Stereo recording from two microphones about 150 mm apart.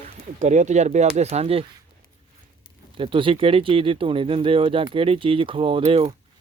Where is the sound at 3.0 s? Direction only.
35° right (ahead or behind).